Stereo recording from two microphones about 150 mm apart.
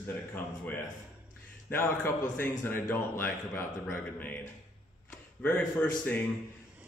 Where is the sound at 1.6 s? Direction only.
15° left (ahead or behind).